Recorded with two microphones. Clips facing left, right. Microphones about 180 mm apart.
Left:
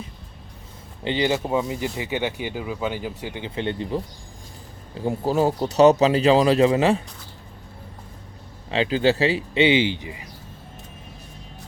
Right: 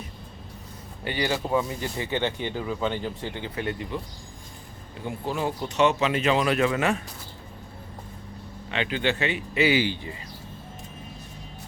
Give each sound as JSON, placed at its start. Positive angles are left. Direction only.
{"t": 1.0, "sound": "speech", "side_deg": 20}
{"t": 8.7, "sound": "speech", "side_deg": 35}